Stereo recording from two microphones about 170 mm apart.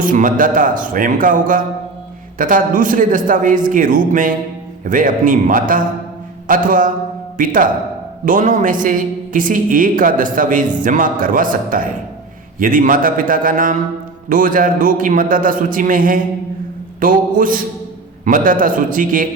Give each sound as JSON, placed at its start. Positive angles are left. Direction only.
{"t": 0.0, "sound": "a woman's voice", "side_deg": -50}